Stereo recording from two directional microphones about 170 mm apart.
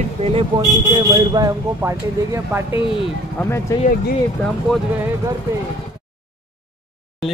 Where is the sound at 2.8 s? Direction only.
30° left (ahead or behind).